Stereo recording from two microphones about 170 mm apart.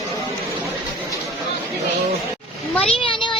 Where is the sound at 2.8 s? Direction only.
30° left (ahead or behind).